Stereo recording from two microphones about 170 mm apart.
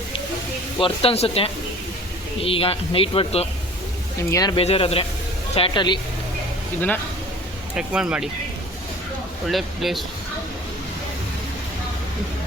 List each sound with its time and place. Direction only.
0.8 s speech: 35° left (ahead or behind)
4.3 s speech: 20° left (ahead or behind)
4.5 s speech: 35° left (ahead or behind)
7.8 s speech: 5° right (ahead or behind)
9.5 s speech: centre (ahead or behind)